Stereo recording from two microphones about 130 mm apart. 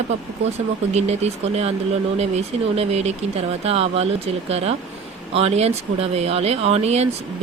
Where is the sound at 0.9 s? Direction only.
55° right (ahead or behind).